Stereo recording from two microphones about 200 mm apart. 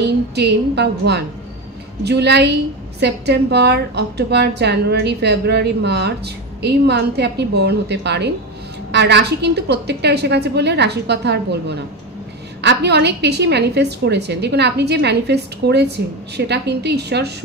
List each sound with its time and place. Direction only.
0.0 s a woman's voice: 55° right (ahead or behind)